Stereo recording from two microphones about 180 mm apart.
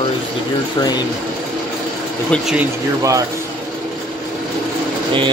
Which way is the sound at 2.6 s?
20° right (ahead or behind).